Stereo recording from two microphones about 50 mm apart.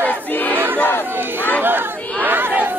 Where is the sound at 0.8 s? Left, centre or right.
Left.